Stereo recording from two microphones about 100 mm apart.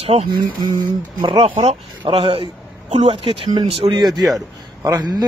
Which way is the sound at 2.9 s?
80° right.